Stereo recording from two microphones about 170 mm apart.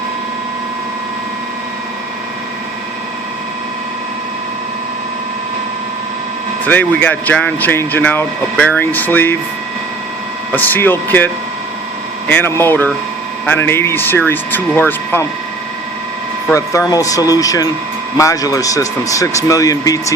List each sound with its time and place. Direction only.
6.7 s speech: 10° left (ahead or behind)
10.5 s speech: 10° left (ahead or behind)
12.3 s speech: 15° left (ahead or behind)
16.5 s speech: 20° left (ahead or behind)